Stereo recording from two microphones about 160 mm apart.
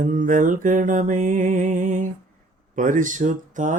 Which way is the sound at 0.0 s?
55° right (ahead or behind).